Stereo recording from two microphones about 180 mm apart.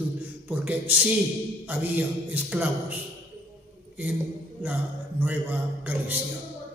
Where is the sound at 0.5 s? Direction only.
10° right (ahead or behind).